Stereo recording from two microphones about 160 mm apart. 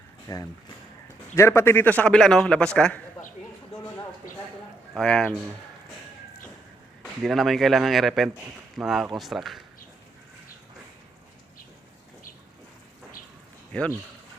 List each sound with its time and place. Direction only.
0.3 s a man's voice: 20° left (ahead or behind); by 3.0 s 5° left (ahead or behind)
4.9 s speech: 5° left (ahead or behind)
7.0 s speech: centre (ahead or behind)